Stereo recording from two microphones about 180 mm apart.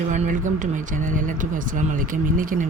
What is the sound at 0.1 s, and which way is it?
Speech, 45° right (ahead or behind).